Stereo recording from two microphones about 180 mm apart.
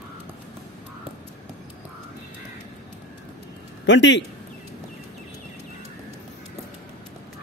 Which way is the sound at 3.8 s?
80° left.